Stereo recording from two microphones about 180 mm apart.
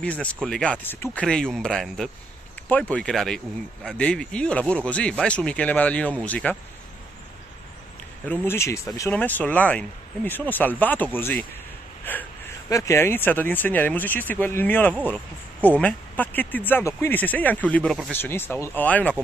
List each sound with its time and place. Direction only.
0.0 s speech: 5° left (ahead or behind)
8.3 s speech: 15° left (ahead or behind)